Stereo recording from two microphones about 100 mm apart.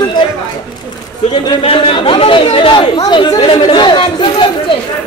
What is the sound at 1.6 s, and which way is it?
Speech, 65° left (ahead or behind).